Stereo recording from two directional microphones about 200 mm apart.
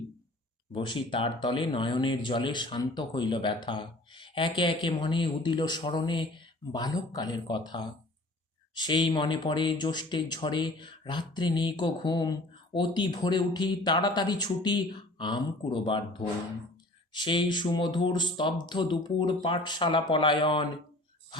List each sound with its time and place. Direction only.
0.7 s speech: 25° left (ahead or behind)
17.1 s speech: 25° left (ahead or behind)